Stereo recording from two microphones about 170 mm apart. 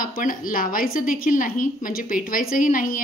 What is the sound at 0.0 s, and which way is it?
A woman's voice, 55° left (ahead or behind).